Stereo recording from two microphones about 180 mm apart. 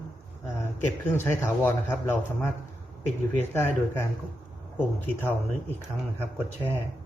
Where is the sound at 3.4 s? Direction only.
15° left (ahead or behind).